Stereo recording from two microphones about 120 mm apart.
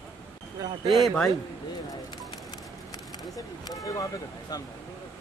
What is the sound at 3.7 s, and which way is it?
Speech, 30° left (ahead or behind).